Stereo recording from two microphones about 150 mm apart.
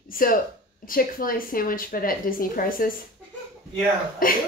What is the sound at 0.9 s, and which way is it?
Speech, 70° left (ahead or behind).